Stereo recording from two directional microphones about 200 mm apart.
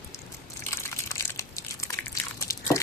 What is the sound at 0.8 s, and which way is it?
Crumpling, 15° left (ahead or behind).